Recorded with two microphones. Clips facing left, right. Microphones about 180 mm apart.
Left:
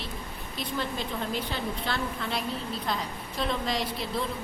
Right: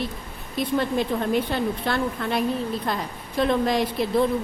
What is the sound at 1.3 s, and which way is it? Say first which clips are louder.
A woman's voice: right 8 dB; 55° right (ahead or behind).